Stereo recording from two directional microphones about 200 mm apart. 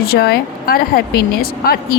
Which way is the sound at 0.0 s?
50° left (ahead or behind).